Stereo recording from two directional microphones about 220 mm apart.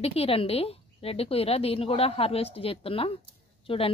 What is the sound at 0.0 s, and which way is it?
A woman's voice, 25° left (ahead or behind).